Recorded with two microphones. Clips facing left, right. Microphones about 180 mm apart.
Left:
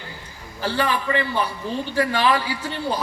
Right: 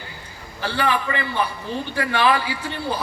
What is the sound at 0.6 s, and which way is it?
A man's voice, 40° left (ahead or behind).